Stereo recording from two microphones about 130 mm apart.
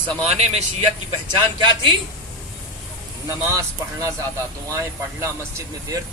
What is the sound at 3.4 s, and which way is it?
Speech, 25° right (ahead or behind).